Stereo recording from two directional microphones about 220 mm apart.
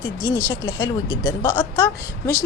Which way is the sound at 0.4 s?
20° left (ahead or behind).